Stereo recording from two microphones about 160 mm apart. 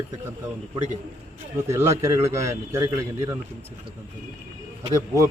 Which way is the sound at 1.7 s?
20° right (ahead or behind).